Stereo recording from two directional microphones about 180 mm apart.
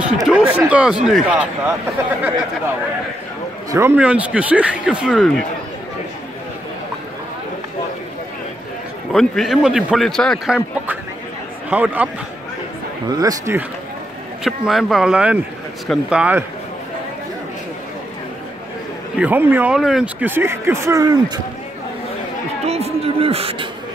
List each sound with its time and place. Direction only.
0.0 s a man's voice: 5° right (ahead or behind)
3.7 s speech: 10° right (ahead or behind)
9.1 s a man's voice: centre (ahead or behind)
13.1 s speech: 20° right (ahead or behind)
14.7 s a man's voice: centre (ahead or behind)
19.1 s speech: 10° right (ahead or behind)
22.7 s a sound: 35° right (ahead or behind)